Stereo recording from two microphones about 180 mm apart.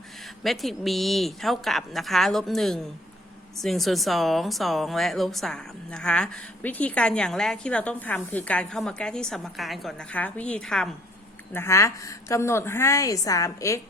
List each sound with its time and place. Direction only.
0.4 s a woman's voice: centre (ahead or behind)
11.5 s a woman's voice: 15° left (ahead or behind)